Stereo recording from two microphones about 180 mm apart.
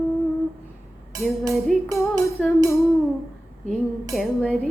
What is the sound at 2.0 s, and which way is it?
Music, 15° left (ahead or behind).